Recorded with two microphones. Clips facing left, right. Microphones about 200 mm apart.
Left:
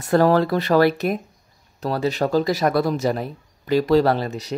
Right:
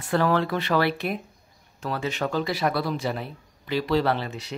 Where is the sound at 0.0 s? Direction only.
40° left (ahead or behind).